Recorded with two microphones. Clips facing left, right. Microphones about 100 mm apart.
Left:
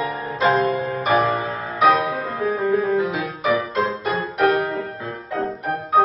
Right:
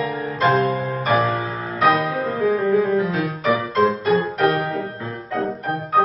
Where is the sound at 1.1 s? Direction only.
20° left (ahead or behind).